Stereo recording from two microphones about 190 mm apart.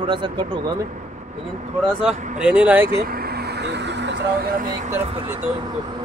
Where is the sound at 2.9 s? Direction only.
55° right (ahead or behind).